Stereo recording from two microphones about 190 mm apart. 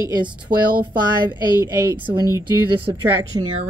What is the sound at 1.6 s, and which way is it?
Speech, 15° right (ahead or behind).